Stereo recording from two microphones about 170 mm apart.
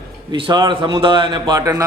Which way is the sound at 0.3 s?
25° right (ahead or behind).